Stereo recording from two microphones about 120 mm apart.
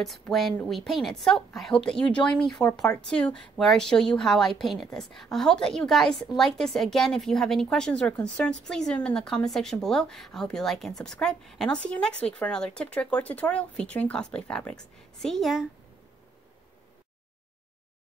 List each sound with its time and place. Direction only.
0.0 s a woman's voice: centre (ahead or behind)